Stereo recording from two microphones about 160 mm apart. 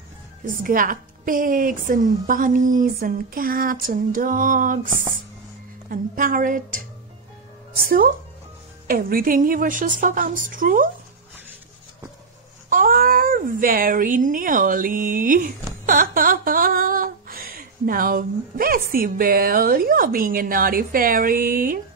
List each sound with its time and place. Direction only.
0.7 s a woman's voice: 60° right (ahead or behind)
5.9 s a woman's voice: 60° right (ahead or behind)
12.6 s speech: 60° right (ahead or behind)